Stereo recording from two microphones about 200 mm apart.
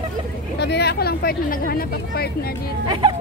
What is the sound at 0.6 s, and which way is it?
Speech, 55° left (ahead or behind).